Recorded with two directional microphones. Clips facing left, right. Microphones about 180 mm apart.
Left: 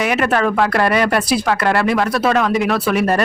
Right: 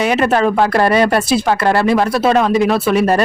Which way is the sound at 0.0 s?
25° right (ahead or behind).